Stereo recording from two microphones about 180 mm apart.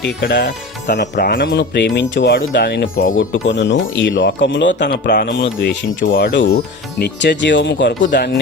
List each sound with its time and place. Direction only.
0.0 s speech: 65° left (ahead or behind)
1.1 s speech: 55° left (ahead or behind)
3.2 s speech: 85° left
6.1 s speech: 60° left (ahead or behind); by 7.9 s 75° left (ahead or behind)